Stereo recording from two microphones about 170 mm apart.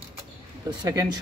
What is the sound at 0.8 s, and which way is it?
Speech, 20° right (ahead or behind).